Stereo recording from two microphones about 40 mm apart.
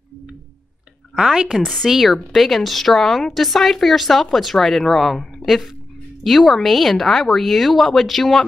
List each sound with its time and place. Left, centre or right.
1.1 s a woman's voice: centre
1.6 s speech: centre
1.9 s speech: centre
6.2 s speech: centre